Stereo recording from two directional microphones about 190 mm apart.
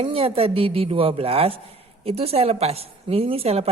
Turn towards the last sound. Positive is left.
turn(degrees=-30)  # may be behind; listen again after turning